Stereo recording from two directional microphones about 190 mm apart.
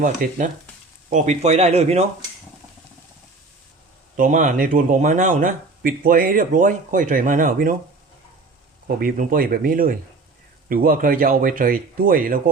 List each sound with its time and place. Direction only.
0.0 s speech: 45° right (ahead or behind)
4.2 s speech: 40° right (ahead or behind)
9.0 s speech: 50° right (ahead or behind)